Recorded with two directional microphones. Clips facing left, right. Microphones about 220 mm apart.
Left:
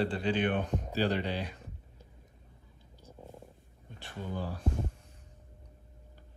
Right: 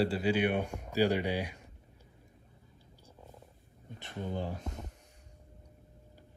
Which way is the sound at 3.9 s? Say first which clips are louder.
Right 1 dB; 20° right (ahead or behind).